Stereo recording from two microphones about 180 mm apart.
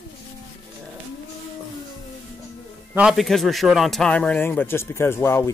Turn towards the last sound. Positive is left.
turn(degrees=15)  # may be behind; listen again after turning